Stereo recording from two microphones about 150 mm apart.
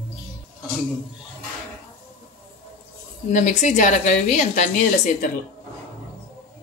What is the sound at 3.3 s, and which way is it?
A woman's voice, 55° left (ahead or behind).